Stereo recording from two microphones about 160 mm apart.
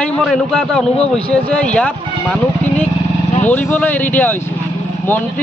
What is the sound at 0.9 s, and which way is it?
Speech, 40° left (ahead or behind).